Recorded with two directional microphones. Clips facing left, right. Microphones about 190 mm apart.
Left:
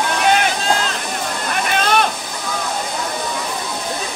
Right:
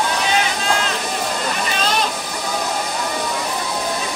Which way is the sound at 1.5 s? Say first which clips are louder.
Left 8 dB; 60° left (ahead or behind).